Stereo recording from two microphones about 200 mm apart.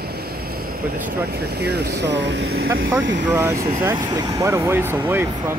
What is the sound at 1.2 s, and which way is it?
Speech, 55° right (ahead or behind).